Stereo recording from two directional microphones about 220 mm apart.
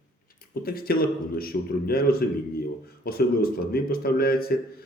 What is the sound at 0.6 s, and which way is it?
Speech, 40° left (ahead or behind).